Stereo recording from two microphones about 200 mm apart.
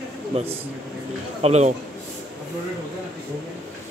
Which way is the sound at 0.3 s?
30° right (ahead or behind).